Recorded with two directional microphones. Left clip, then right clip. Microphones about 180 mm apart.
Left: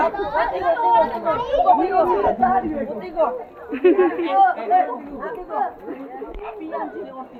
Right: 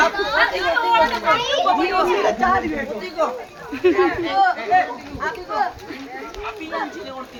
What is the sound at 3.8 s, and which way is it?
Speech, 15° right (ahead or behind).